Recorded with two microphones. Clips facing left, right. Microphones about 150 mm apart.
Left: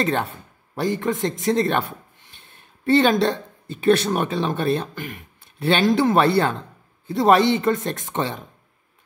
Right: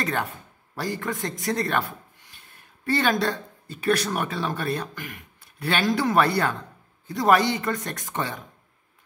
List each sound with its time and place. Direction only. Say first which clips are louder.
0.0 s speech: left 5 dB; 30° left (ahead or behind)